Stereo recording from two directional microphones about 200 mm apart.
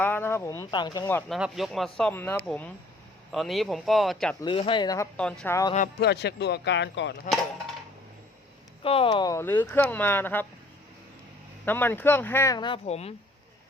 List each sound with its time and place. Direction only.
0.0 s speech: 10° left (ahead or behind)
1.3 s speech: centre (ahead or behind)
4.4 s speech: 25° left (ahead or behind)
5.1 s speech: 5° left (ahead or behind)
6.0 s speech: 55° left (ahead or behind)
8.8 s speech: 25° left (ahead or behind); by 10.4 s 10° left (ahead or behind)
11.6 s speech: 10° left (ahead or behind); by 13.1 s 30° left (ahead or behind)